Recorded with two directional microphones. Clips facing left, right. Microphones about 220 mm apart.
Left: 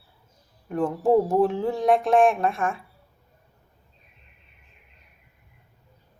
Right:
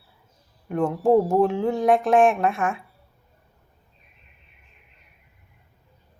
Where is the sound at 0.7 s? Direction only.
30° left (ahead or behind).